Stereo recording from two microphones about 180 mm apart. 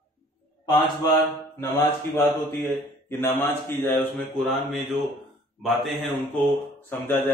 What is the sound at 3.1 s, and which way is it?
A man's voice, 10° left (ahead or behind).